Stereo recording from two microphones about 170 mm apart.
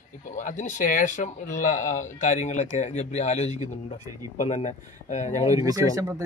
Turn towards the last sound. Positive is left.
turn(degrees=-20)  # may be behind; listen again after turning